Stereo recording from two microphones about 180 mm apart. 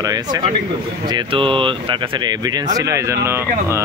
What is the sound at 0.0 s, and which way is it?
Speech, 20° right (ahead or behind).